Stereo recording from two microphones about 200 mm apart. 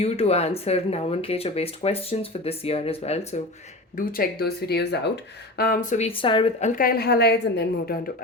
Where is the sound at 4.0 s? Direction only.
45° left (ahead or behind).